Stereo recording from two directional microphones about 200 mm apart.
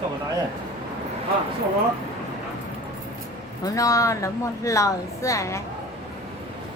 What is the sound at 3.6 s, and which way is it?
A woman's voice, 15° left (ahead or behind).